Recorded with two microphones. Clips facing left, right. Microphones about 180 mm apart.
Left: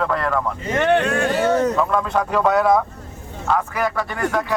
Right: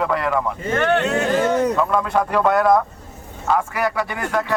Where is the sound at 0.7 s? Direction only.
20° left (ahead or behind).